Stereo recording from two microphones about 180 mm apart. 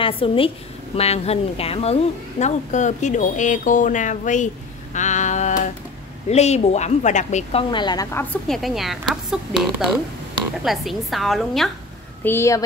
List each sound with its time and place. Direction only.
0.0 s a woman's voice: 30° left (ahead or behind)
4.9 s a sound: 40° left (ahead or behind)
6.3 s a woman's voice: 35° left (ahead or behind)
7.7 s a woman's voice: 25° left (ahead or behind); by 11.7 s centre (ahead or behind)
12.2 s speech: 15° left (ahead or behind)